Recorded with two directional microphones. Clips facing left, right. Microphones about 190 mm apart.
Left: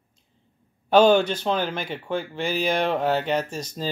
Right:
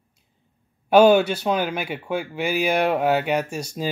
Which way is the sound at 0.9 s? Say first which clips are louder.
Right 2 dB; 10° right (ahead or behind).